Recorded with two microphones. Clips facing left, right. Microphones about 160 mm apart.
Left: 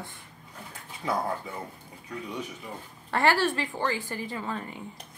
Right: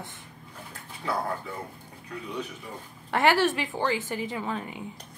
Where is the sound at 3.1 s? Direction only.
20° right (ahead or behind).